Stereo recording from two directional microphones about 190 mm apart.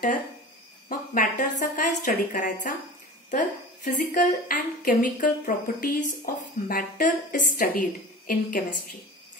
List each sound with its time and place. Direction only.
0.8 s a woman's voice: 45° left (ahead or behind)